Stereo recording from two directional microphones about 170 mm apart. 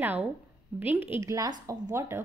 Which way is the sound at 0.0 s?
10° right (ahead or behind).